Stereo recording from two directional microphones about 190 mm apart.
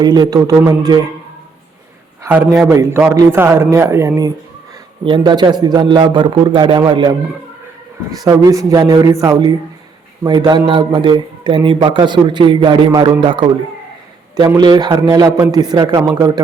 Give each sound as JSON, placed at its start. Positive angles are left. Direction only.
{"t": 0.0, "sound": "speech", "side_deg": -20}
{"t": 2.2, "sound": "a man's voice", "side_deg": -15}
{"t": 8.2, "sound": "a man's voice", "side_deg": -20}